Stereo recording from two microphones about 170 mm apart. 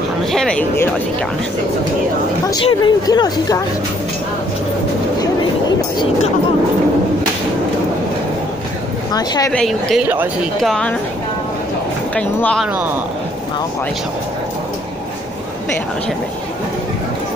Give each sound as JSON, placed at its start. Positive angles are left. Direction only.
{"t": 0.3, "sound": "speech", "side_deg": 5}
{"t": 2.4, "sound": "speech", "side_deg": 25}
{"t": 9.1, "sound": "speech", "side_deg": 25}
{"t": 9.5, "sound": "speech", "side_deg": 5}
{"t": 12.2, "sound": "speech", "side_deg": 5}